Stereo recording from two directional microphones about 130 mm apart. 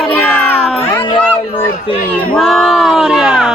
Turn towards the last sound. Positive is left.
turn(degrees=-5)  # may be behind; listen again after turning